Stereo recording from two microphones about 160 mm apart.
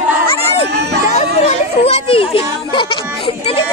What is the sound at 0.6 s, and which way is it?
Speech, 90° right.